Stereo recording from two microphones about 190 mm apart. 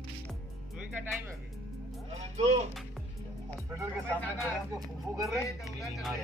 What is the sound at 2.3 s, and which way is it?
Speech, 35° right (ahead or behind).